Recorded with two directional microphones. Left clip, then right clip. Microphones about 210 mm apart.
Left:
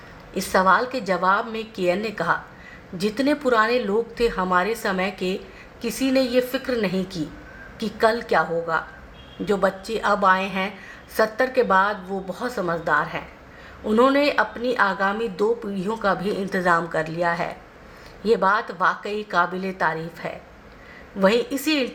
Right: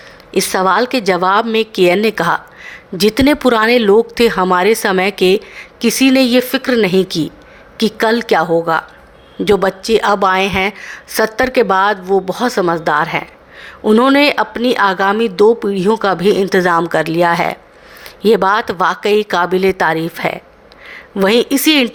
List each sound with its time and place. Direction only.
0.3 s speech: 50° right (ahead or behind)